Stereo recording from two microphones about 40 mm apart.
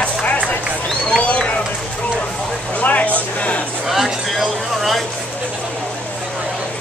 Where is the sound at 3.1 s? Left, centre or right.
Left.